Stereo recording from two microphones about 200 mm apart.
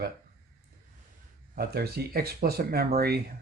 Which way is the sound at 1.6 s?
50° right (ahead or behind).